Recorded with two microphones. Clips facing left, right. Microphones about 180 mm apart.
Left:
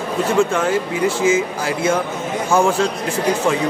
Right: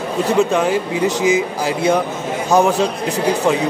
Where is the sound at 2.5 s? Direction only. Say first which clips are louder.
Right 2 dB; 20° right (ahead or behind).